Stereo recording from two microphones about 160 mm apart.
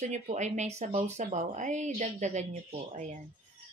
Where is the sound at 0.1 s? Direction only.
45° right (ahead or behind).